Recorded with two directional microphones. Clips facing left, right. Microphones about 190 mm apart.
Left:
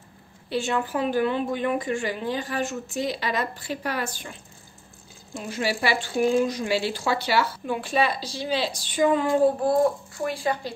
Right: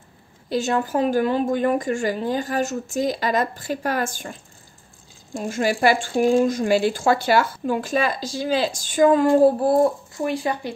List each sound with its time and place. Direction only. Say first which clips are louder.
0.5 s speech: right 4 dB; 40° right (ahead or behind)
5.4 s speech: right 6 dB; 50° right (ahead or behind)
10.1 s speech: right 3 dB; 20° right (ahead or behind)